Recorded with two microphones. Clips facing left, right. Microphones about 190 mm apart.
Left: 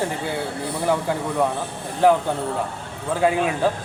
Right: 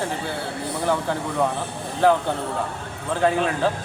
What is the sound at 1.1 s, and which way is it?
Speech, 10° left (ahead or behind).